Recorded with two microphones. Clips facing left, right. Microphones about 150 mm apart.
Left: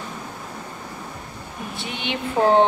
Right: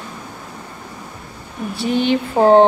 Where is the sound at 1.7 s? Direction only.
35° right (ahead or behind).